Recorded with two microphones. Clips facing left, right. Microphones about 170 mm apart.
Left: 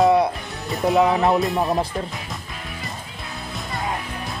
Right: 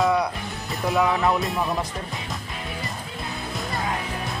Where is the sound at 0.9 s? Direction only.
25° left (ahead or behind).